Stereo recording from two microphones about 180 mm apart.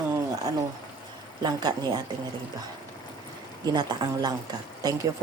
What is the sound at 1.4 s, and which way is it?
Speech, 20° right (ahead or behind).